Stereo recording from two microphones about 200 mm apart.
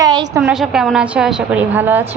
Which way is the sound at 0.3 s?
Centre (ahead or behind).